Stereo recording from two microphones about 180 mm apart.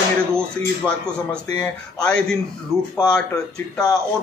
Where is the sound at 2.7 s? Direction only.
Centre (ahead or behind).